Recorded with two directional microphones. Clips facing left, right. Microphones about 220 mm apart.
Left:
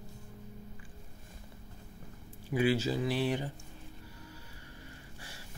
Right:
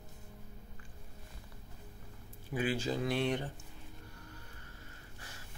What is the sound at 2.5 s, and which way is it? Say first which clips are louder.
Speech: left 5 dB; 10° left (ahead or behind).